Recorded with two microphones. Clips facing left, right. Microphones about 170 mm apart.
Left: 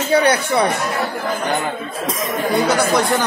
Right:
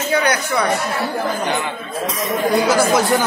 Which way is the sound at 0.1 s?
30° left (ahead or behind).